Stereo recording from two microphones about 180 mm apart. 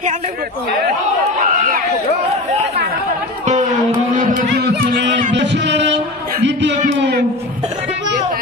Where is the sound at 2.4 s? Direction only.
40° right (ahead or behind).